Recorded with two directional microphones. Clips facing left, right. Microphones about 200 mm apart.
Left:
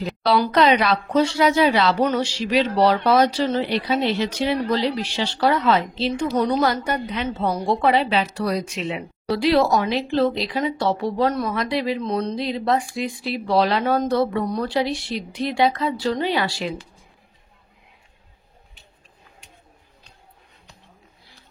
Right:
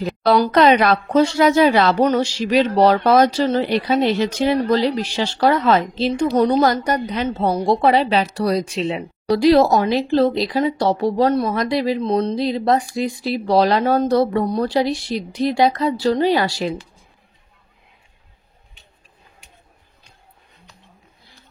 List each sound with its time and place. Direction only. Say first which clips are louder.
0.0 s a woman's voice: right 4 dB; 45° right (ahead or behind)